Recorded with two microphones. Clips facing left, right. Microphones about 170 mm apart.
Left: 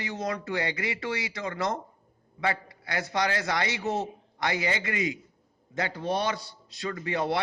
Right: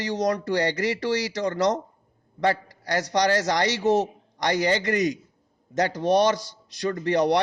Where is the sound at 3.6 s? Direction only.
80° right.